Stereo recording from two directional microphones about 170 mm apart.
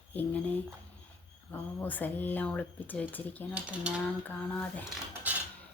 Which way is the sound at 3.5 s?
5° right (ahead or behind).